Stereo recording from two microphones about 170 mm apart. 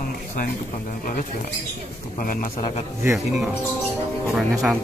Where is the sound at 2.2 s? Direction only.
55° left (ahead or behind).